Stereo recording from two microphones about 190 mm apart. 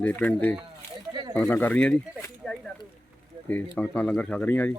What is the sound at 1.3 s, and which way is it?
Speech, 10° left (ahead or behind).